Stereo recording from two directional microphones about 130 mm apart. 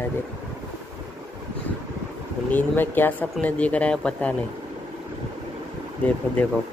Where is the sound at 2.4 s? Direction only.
15° left (ahead or behind).